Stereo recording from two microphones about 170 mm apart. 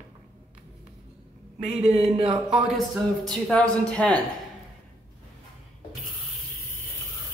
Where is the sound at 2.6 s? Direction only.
Centre (ahead or behind).